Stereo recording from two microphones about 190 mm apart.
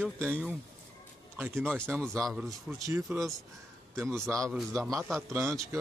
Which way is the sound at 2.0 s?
Centre (ahead or behind).